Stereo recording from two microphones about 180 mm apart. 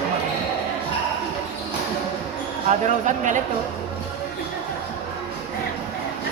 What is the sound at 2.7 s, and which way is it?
Speech, 45° right (ahead or behind).